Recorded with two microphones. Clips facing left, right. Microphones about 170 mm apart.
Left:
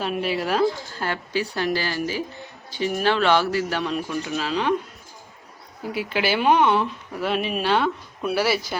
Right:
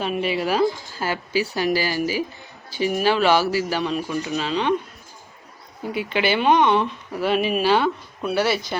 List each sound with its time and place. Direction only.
0.0 s speech: centre (ahead or behind)
5.9 s speech: 5° left (ahead or behind)